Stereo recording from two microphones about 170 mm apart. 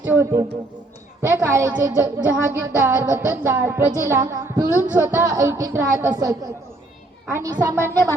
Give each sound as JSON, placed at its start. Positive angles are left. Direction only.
{"t": 0.0, "sound": "a man's voice", "side_deg": -15}